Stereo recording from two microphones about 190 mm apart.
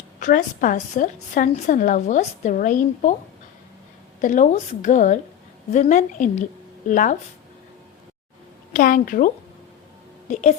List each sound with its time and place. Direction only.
0.2 s a woman's voice: 45° left (ahead or behind)
4.2 s a woman's voice: 40° left (ahead or behind)
8.7 s a woman's voice: 45° left (ahead or behind)